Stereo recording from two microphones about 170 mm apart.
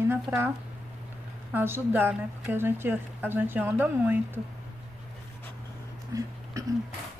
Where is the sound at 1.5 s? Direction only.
10° right (ahead or behind).